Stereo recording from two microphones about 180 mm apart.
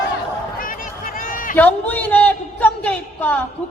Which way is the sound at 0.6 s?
50° left (ahead or behind).